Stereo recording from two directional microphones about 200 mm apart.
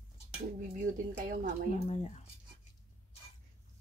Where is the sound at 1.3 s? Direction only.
40° right (ahead or behind).